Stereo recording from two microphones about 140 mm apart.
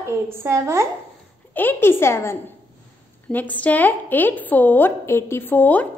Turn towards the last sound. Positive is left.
turn(degrees=15)  # may be behind; listen again after turning